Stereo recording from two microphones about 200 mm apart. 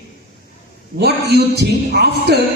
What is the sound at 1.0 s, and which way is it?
A man's voice, 55° right (ahead or behind).